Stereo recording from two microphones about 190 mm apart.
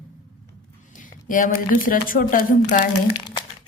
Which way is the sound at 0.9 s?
45° left (ahead or behind).